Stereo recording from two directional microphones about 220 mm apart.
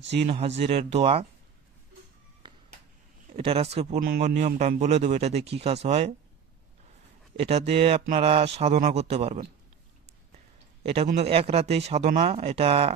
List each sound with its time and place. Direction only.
0.6 s speech: 30° right (ahead or behind)
2.4 s a sound: 20° right (ahead or behind)
3.7 s a man's voice: 30° right (ahead or behind)
7.3 s speech: 25° right (ahead or behind)